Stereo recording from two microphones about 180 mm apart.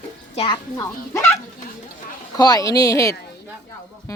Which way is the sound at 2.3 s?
20° left (ahead or behind).